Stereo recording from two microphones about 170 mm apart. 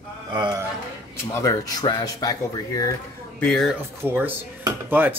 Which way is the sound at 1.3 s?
20° left (ahead or behind).